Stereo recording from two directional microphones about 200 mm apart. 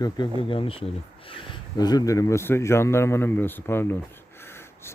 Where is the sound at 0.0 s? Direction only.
25° left (ahead or behind).